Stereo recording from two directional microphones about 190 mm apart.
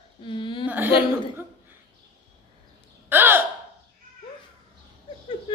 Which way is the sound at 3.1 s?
10° right (ahead or behind).